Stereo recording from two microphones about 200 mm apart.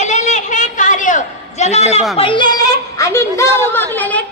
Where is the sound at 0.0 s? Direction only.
35° left (ahead or behind).